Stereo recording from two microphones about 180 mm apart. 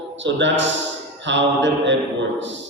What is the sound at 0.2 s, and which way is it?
A man's voice, 90° right.